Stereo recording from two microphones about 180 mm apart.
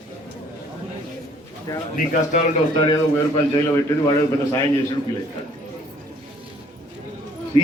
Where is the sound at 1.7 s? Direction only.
20° left (ahead or behind).